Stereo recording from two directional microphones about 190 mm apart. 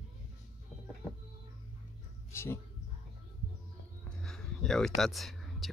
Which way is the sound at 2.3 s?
15° left (ahead or behind).